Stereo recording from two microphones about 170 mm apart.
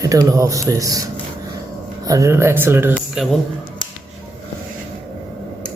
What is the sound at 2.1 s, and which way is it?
Speech, 15° right (ahead or behind).